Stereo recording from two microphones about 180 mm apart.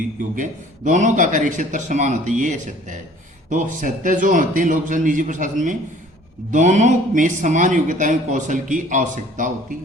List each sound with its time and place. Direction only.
0.9 s speech: 45° right (ahead or behind)